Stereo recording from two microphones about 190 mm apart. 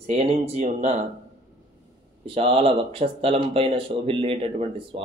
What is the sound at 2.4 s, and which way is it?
Speech, 30° right (ahead or behind).